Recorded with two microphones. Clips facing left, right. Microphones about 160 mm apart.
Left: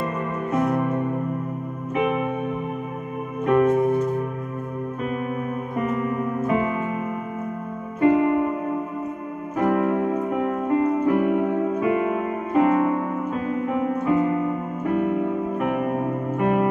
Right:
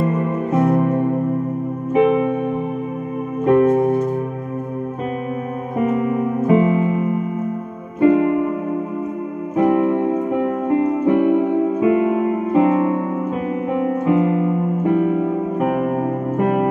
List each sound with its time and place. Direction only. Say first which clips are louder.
0.5 s music: right 5 dB; 30° right (ahead or behind)
2.0 s music: right 8 dB; 30° right (ahead or behind)
3.4 s music: right 4 dB; 30° right (ahead or behind)
5.9 s music: right 6 dB; 25° right (ahead or behind)
8.0 s music: right 4 dB; 25° right (ahead or behind)
9.6 s music: right 5 dB; 25° right (ahead or behind)
14.0 s music: right 4 dB; 20° right (ahead or behind)
15.6 s music: right 5 dB; 35° right (ahead or behind)